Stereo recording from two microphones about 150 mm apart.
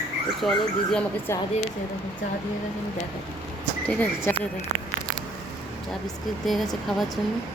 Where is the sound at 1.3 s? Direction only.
15° left (ahead or behind).